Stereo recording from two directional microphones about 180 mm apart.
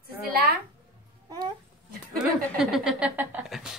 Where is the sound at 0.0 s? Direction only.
60° right (ahead or behind).